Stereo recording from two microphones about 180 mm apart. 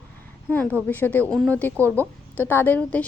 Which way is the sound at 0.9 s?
10° left (ahead or behind).